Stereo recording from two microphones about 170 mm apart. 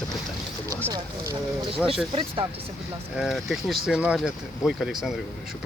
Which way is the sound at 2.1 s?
30° right (ahead or behind).